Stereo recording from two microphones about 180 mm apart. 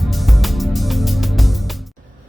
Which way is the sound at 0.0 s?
Centre (ahead or behind).